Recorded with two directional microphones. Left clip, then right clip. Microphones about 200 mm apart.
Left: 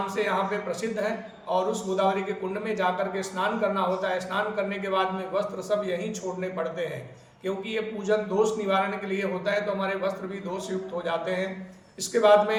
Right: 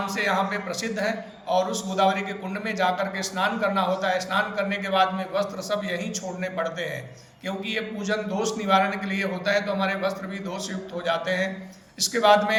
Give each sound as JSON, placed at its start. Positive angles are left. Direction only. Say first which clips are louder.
{"t": 0.0, "sound": "a man's voice", "louder": "right 2 dB", "side_deg": 15}